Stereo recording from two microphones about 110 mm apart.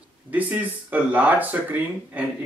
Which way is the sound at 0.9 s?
15° right (ahead or behind).